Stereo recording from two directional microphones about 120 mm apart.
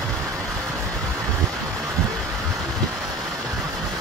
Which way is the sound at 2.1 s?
5° left (ahead or behind).